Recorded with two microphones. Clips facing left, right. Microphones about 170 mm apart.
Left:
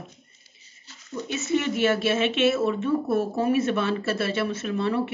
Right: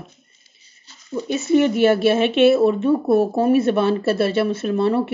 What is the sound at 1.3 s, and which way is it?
Speech, 35° right (ahead or behind).